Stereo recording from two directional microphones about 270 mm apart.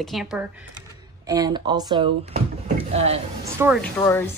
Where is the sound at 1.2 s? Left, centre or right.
Centre.